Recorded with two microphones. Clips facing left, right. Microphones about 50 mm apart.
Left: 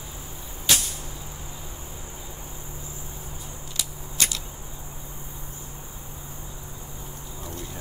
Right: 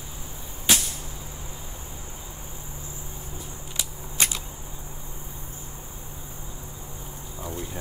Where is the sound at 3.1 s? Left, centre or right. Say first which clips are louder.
Right 1 dB; centre.